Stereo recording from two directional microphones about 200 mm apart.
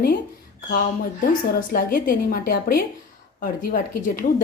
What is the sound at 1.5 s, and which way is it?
A woman's voice, 45° left (ahead or behind).